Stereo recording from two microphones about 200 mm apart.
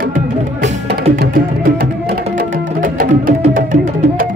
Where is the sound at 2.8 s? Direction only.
45° right (ahead or behind).